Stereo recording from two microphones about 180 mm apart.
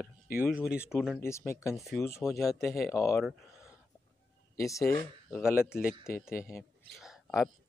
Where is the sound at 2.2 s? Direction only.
Centre (ahead or behind).